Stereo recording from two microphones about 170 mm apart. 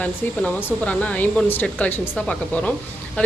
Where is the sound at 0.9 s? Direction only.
10° left (ahead or behind).